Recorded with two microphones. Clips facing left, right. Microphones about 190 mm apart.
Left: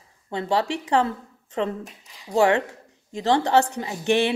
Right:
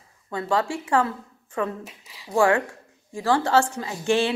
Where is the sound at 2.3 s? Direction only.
20° left (ahead or behind).